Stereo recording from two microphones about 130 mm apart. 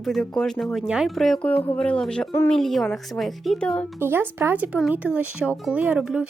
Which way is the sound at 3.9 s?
15° right (ahead or behind).